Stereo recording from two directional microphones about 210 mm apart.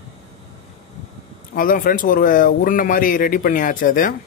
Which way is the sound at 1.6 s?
40° left (ahead or behind).